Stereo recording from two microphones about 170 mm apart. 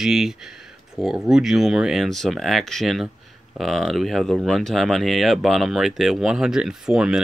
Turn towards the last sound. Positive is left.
turn(degrees=-5)  # may be behind; listen again after turning